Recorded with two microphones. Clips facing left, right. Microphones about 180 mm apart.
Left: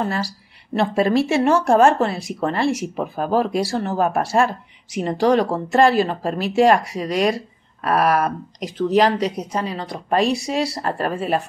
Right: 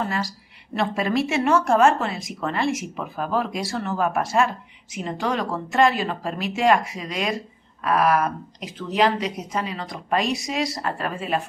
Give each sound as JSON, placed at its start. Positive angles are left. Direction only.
{"t": 0.0, "sound": "speech", "side_deg": 35}